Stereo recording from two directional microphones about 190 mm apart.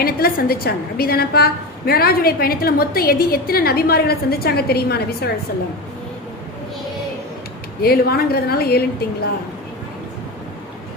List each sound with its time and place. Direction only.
0.0 s a woman's voice: 50° left (ahead or behind)
7.8 s a woman's voice: 55° left (ahead or behind)